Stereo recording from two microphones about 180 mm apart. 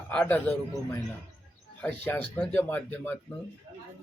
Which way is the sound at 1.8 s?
10° left (ahead or behind).